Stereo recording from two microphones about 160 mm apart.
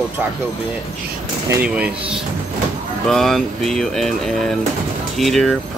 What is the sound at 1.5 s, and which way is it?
Speech, 10° right (ahead or behind).